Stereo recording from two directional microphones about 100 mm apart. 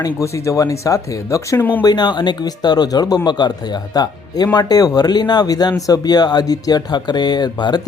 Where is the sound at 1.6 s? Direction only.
20° left (ahead or behind).